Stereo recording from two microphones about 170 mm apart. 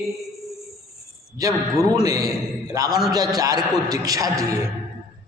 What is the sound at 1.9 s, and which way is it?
A man's voice, 20° right (ahead or behind).